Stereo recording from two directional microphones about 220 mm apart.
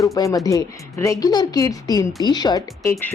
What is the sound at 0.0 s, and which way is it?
Speech, 15° left (ahead or behind).